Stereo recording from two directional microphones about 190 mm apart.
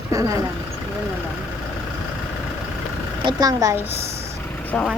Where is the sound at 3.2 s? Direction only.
20° right (ahead or behind).